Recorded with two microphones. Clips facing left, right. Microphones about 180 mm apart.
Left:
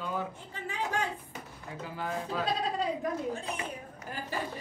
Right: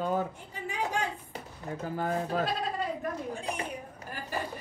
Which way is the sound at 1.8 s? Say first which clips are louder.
Right 4 dB; 45° right (ahead or behind).